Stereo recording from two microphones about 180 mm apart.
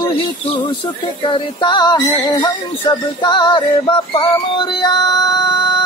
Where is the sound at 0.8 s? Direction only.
25° left (ahead or behind).